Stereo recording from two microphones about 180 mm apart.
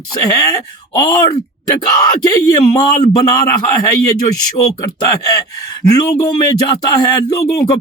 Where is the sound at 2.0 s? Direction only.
20° left (ahead or behind).